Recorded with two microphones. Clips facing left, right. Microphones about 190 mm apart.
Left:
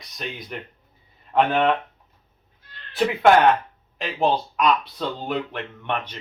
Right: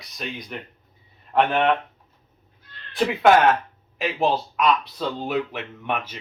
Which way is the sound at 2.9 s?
Centre (ahead or behind).